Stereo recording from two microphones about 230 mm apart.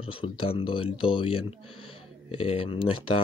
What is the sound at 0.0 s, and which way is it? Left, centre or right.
Speech, left.